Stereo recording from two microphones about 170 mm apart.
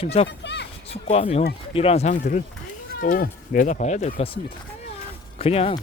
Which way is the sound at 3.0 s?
55° left (ahead or behind).